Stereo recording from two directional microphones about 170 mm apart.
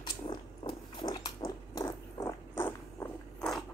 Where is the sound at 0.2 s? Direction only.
30° left (ahead or behind).